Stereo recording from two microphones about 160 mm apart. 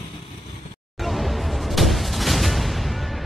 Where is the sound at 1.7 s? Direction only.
Centre (ahead or behind).